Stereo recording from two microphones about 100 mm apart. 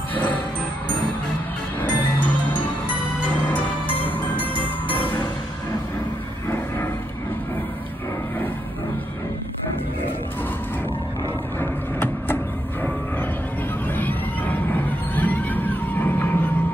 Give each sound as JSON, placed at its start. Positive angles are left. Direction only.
{"t": 0.1, "sound": "music", "side_deg": 15}
{"t": 11.6, "sound": "vehicle", "side_deg": 20}
{"t": 13.9, "sound": "a sound", "side_deg": 20}